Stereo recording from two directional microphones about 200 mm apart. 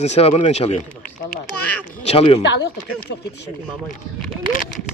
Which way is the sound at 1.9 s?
30° left (ahead or behind).